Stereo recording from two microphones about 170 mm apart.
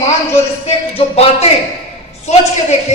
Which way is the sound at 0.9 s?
35° left (ahead or behind).